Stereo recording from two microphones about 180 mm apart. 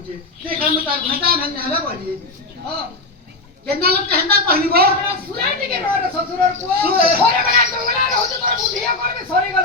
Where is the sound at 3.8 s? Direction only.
60° right (ahead or behind).